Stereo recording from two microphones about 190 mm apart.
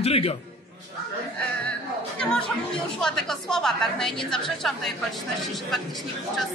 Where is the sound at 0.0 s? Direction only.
30° left (ahead or behind).